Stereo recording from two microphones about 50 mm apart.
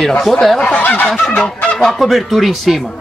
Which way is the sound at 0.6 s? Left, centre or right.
Left.